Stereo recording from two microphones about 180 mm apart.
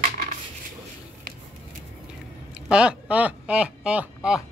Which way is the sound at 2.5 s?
5° right (ahead or behind).